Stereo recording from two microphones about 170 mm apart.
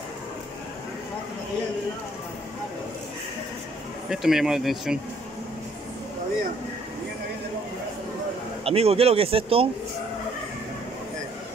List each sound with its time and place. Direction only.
4.1 s speech: centre (ahead or behind)
8.6 s speech: 35° right (ahead or behind)